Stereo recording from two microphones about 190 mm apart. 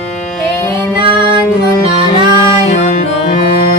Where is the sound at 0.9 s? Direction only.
25° right (ahead or behind).